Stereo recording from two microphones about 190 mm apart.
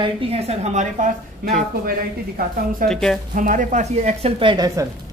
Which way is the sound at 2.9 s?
5° left (ahead or behind).